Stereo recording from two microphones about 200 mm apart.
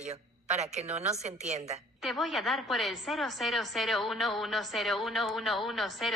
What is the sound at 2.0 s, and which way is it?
A woman's voice, centre (ahead or behind).